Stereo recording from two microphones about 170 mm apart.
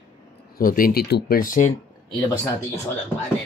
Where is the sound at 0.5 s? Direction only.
55° left (ahead or behind).